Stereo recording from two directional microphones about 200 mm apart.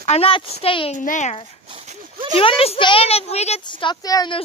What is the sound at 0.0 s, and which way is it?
A child's voice, 30° left (ahead or behind).